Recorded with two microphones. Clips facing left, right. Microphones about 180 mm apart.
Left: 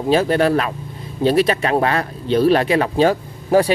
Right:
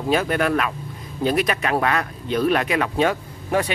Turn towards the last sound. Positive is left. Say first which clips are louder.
# left 7 dB
turn(degrees=35)  # may be behind; listen again after turning